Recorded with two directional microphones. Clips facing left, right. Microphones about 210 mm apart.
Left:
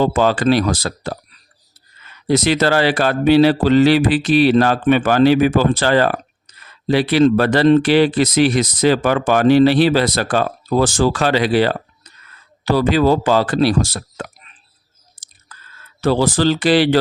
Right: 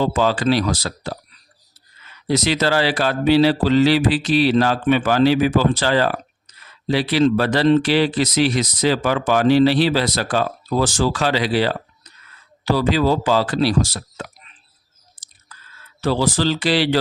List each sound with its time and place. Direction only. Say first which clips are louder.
0.0 s speech: left 3 dB; 55° left (ahead or behind)
16.0 s speech: left 3 dB; 50° left (ahead or behind)